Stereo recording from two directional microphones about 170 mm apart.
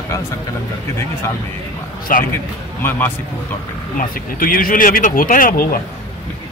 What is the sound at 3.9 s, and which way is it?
Speech, 55° left (ahead or behind).